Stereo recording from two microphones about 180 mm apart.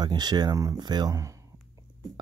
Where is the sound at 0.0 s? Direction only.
25° right (ahead or behind).